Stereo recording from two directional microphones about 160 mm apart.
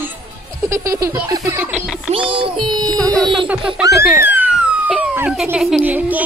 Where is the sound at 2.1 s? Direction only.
35° right (ahead or behind).